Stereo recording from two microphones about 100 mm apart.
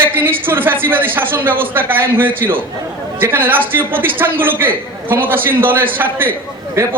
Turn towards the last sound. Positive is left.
turn(degrees=-25)  # may be behind; listen again after turning